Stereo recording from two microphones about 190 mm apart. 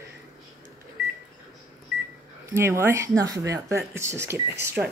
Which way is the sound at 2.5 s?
15° right (ahead or behind).